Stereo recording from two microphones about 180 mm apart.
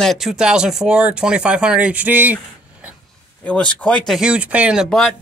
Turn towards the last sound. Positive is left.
turn(degrees=0)  # may be behind; listen again after turning